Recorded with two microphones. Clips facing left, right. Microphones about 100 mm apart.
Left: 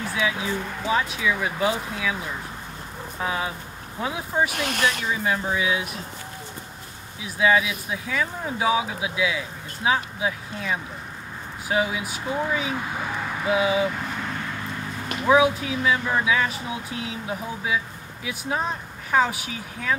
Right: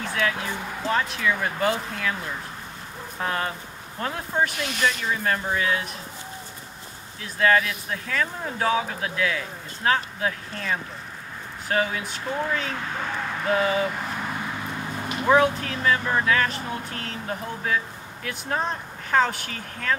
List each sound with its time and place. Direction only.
0.0 s speech: 5° left (ahead or behind)
4.6 s speech: 50° left (ahead or behind)
4.8 s speech: 5° left (ahead or behind)
7.2 s speech: 10° left (ahead or behind)